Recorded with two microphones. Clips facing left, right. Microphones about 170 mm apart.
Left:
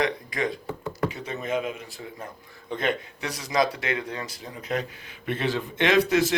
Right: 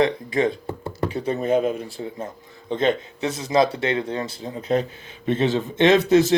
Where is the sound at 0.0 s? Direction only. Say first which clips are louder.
Right 7 dB; 25° right (ahead or behind).